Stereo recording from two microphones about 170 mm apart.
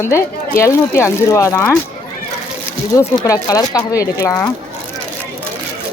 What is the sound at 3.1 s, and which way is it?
Speech, 20° left (ahead or behind).